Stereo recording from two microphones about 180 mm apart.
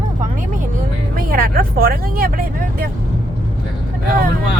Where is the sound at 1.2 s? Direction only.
50° right (ahead or behind).